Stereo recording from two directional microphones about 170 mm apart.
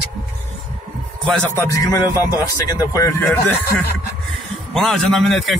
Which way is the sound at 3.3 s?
10° left (ahead or behind).